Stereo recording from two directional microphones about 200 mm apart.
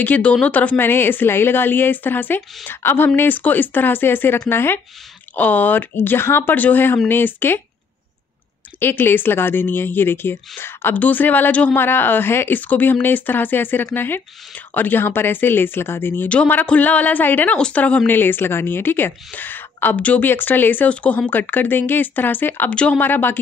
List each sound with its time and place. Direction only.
0.0 s speech: 5° left (ahead or behind)
8.7 s speech: 10° left (ahead or behind)